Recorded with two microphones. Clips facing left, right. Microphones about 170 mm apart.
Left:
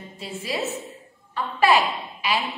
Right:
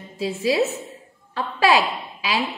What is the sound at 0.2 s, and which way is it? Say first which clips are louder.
A woman's voice: right 8 dB; 90° right.